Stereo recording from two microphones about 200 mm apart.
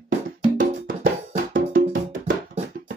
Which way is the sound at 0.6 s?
45° right (ahead or behind).